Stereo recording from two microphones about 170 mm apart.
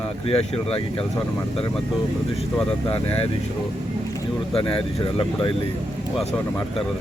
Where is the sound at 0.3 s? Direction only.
35° left (ahead or behind).